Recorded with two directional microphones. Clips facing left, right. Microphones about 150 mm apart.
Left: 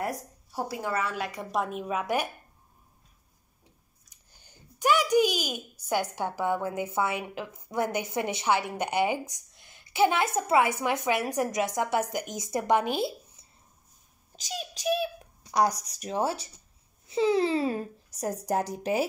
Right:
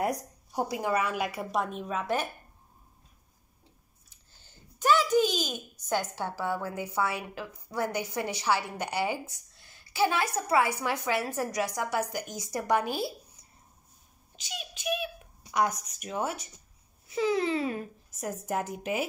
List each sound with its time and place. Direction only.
0.0 s a woman's voice: 20° right (ahead or behind); by 2.2 s 10° left (ahead or behind)
4.3 s a woman's voice: 15° left (ahead or behind)
14.3 s a child's voice: 40° left (ahead or behind)